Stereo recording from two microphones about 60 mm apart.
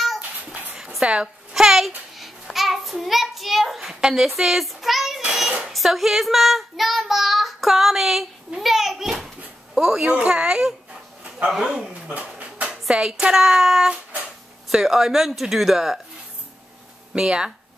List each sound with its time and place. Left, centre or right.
0.9 s babbling: centre
5.7 s child singing: centre
9.8 s speech: centre
11.5 s a sound: centre
12.8 s a woman's voice: centre
17.1 s a woman's voice: centre